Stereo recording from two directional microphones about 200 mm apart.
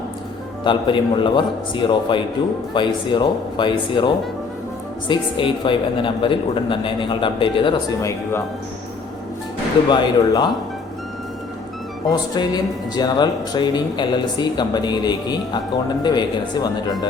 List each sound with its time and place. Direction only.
0.6 s speech: 25° left (ahead or behind)
9.9 s speech: 20° left (ahead or behind)
12.1 s speech: 20° left (ahead or behind)